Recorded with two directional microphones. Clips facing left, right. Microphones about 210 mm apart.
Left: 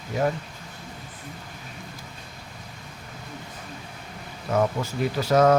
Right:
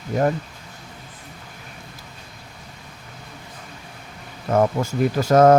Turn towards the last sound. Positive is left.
turn(degrees=-50)  # may be behind; listen again after turning